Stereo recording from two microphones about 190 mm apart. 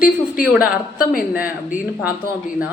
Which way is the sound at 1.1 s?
50° left (ahead or behind).